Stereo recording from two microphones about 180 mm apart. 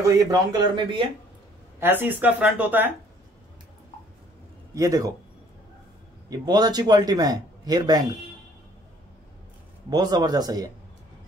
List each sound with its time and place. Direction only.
0.0 s speech: 20° right (ahead or behind)
1.8 s speech: 10° right (ahead or behind)
4.7 s speech: 20° right (ahead or behind)
6.3 s speech: 20° right (ahead or behind)
9.8 s speech: 20° right (ahead or behind)